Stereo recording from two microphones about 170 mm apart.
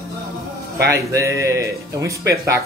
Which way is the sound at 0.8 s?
20° right (ahead or behind).